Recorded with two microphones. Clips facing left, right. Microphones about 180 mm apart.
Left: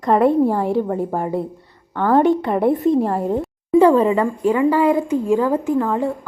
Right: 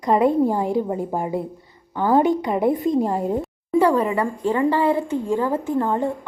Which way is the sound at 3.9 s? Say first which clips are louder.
Left 5 dB; 25° left (ahead or behind).